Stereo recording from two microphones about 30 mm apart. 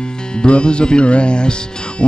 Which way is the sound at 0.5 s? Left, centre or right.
Left.